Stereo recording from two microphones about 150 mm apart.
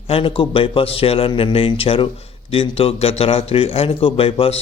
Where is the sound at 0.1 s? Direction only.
35° left (ahead or behind).